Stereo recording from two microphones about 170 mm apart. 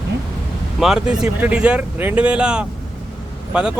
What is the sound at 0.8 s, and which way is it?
Speech, 5° right (ahead or behind).